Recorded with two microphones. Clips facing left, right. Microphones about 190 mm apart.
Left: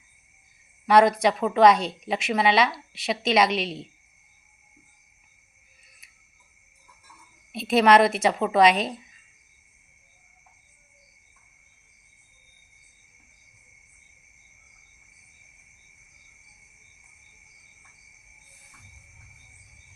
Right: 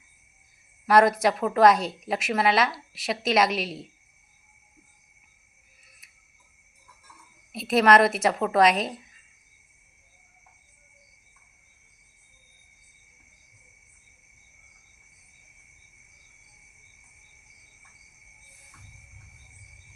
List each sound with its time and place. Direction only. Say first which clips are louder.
0.9 s a woman's voice: left 1 dB; centre (ahead or behind)
7.5 s a woman's voice: left 1 dB; centre (ahead or behind)